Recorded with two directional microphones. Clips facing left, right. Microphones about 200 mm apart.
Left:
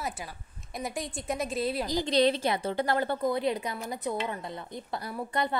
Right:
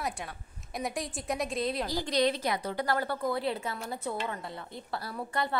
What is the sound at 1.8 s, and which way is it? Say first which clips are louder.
A woman's voice: left 5 dB; 20° left (ahead or behind).